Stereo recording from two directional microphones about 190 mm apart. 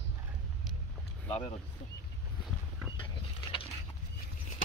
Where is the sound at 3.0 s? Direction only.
25° left (ahead or behind).